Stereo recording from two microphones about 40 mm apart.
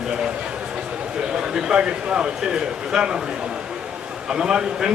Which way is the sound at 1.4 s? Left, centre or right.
Centre.